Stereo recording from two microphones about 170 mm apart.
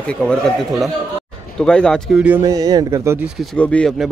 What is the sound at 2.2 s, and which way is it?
Speech, 15° right (ahead or behind).